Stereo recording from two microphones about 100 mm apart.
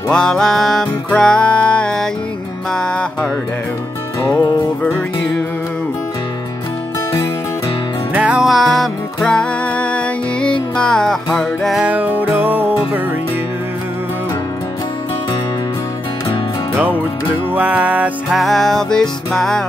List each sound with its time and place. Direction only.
0.1 s music: 5° left (ahead or behind)
8.1 s music: 10° right (ahead or behind)
8.5 s music: centre (ahead or behind)
11.8 s music: 15° right (ahead or behind)
17.6 s music: 15° right (ahead or behind)
18.3 s music: centre (ahead or behind)